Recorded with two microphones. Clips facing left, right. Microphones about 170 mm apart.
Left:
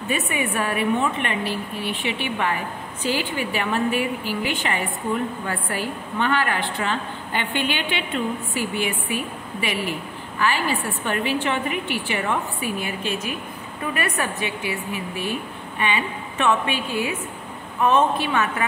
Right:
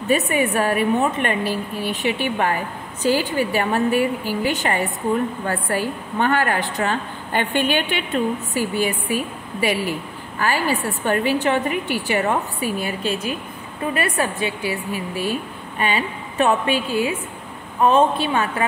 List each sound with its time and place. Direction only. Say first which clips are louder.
0.1 s a woman's voice: right 6 dB; 40° right (ahead or behind)